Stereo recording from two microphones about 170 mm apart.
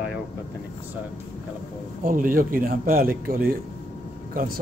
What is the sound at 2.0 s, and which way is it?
Speech, 55° right (ahead or behind).